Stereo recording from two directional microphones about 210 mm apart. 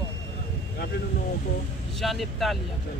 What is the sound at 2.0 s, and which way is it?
Speech, centre (ahead or behind).